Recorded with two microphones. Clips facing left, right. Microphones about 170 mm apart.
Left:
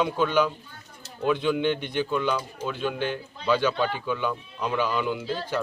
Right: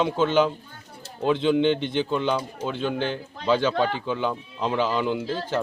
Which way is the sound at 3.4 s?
25° right (ahead or behind).